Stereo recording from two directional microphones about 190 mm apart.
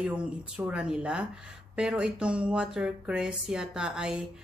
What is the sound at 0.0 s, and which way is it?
Speech, 5° right (ahead or behind).